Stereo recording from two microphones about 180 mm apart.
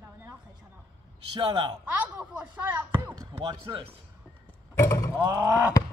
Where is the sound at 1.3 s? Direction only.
25° right (ahead or behind).